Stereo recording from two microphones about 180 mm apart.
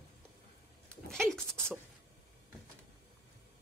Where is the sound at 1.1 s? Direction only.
Centre (ahead or behind).